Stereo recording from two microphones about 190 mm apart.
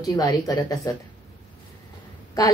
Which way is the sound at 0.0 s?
20° left (ahead or behind).